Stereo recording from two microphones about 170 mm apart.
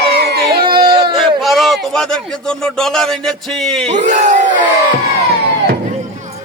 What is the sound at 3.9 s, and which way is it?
Crowd, 45° right (ahead or behind).